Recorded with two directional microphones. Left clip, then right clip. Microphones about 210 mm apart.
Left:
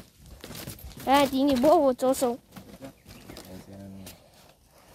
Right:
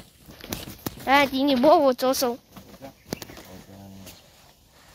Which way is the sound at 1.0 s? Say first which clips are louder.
Right 2 dB; 15° left (ahead or behind).